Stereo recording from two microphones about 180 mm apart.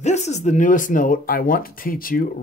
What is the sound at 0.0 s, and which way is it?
Speech, 40° left (ahead or behind).